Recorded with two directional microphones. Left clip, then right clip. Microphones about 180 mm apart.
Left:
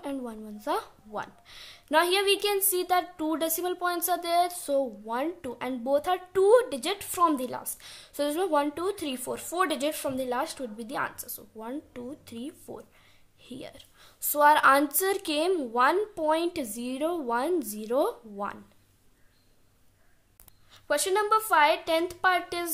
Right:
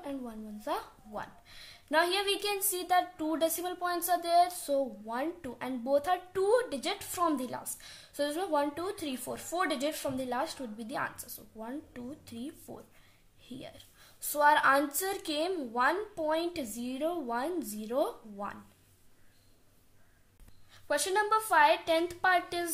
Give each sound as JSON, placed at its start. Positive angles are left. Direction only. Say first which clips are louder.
{"t": 0.0, "sound": "a woman's voice", "louder": "left 5 dB", "side_deg": 45}
{"t": 20.7, "sound": "speech", "louder": "left 3 dB", "side_deg": 40}